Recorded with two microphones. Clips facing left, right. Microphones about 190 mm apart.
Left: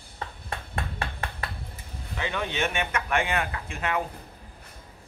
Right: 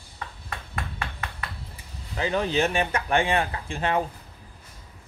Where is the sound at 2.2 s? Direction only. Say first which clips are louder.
Right 5 dB; 35° right (ahead or behind).